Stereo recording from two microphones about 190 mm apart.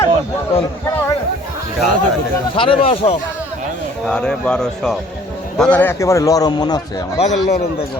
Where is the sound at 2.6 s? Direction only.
25° left (ahead or behind).